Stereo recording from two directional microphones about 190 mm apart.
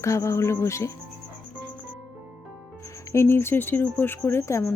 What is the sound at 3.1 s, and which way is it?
Speech, 15° left (ahead or behind).